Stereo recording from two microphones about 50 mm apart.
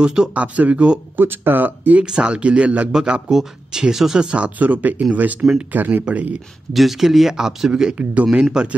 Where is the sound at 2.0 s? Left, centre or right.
Centre.